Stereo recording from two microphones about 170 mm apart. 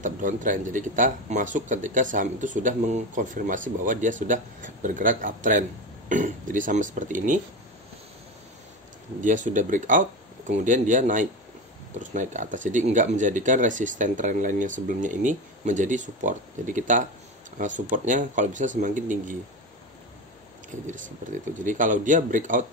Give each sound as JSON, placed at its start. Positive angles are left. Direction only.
{"t": 0.0, "sound": "speech", "side_deg": -50}
{"t": 9.2, "sound": "speech", "side_deg": -45}
{"t": 20.8, "sound": "speech", "side_deg": -50}